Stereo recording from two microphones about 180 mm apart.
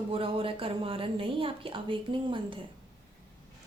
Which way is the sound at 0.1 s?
30° right (ahead or behind).